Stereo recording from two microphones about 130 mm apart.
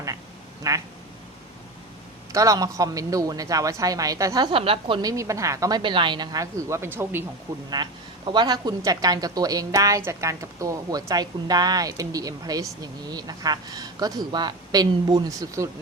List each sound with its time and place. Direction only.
0.7 s a woman's voice: 25° right (ahead or behind)
2.3 s a woman's voice: 25° right (ahead or behind)
4.5 s a woman's voice: 45° right (ahead or behind)
5.0 s a woman's voice: 25° right (ahead or behind)
7.7 s a woman's voice: 35° right (ahead or behind)